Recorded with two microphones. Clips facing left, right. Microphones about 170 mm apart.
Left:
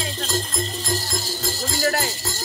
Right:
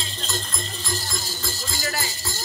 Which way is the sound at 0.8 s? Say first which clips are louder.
Left 5 dB; 40° left (ahead or behind).